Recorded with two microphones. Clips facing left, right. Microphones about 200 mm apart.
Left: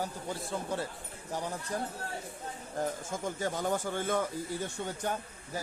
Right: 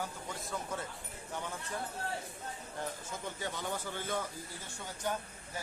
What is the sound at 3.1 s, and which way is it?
Speech, 45° left (ahead or behind).